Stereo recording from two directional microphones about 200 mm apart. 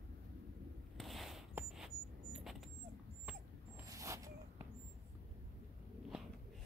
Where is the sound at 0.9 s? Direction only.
Centre (ahead or behind).